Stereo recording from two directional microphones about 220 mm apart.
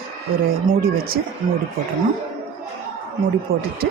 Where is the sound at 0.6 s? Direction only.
40° right (ahead or behind).